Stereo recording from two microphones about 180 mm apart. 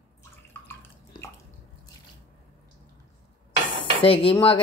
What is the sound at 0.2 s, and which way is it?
Drip, 15° left (ahead or behind).